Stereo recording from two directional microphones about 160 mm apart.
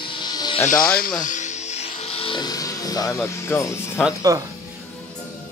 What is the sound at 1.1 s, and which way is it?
Music, 50° left (ahead or behind).